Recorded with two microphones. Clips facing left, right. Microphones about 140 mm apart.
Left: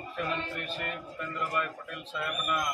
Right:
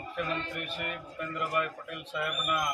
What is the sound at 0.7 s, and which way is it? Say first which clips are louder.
A man's voice: even; 15° right (ahead or behind).